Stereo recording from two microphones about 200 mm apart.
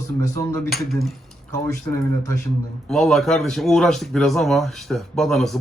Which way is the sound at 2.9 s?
Centre (ahead or behind).